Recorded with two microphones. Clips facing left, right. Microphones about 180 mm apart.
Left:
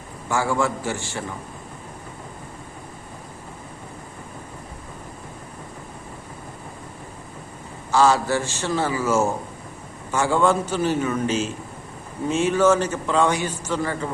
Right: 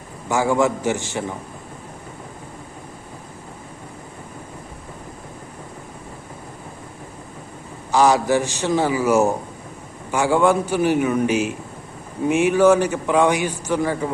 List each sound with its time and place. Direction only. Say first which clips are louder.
0.3 s a man's voice: right 4 dB; 15° right (ahead or behind)
7.9 s a man's voice: right 2 dB; 15° right (ahead or behind)